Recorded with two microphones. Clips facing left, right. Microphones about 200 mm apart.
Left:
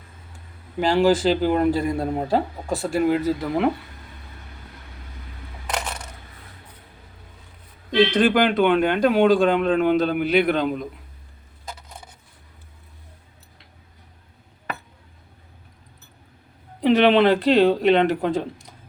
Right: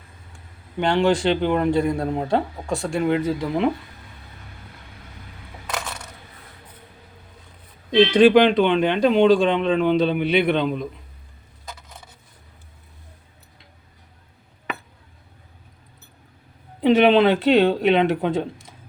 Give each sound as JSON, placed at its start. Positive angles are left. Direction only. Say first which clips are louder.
{"t": 0.3, "sound": "a man's voice", "louder": "even", "side_deg": 0}
{"t": 7.9, "sound": "a man's voice", "louder": "right 4 dB", "side_deg": 0}
{"t": 16.8, "sound": "a man's voice", "louder": "right 1 dB", "side_deg": 0}